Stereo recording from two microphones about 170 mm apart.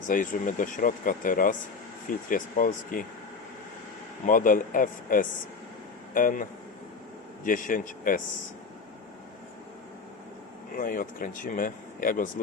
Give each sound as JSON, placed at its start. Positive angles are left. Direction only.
{"t": 0.1, "sound": "speech", "side_deg": 50}
{"t": 4.3, "sound": "speech", "side_deg": 55}
{"t": 10.8, "sound": "speech", "side_deg": 55}